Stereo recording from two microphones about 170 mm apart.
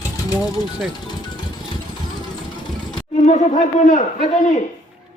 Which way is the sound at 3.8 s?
50° left (ahead or behind).